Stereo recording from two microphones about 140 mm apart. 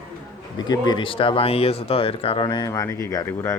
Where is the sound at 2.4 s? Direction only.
25° left (ahead or behind).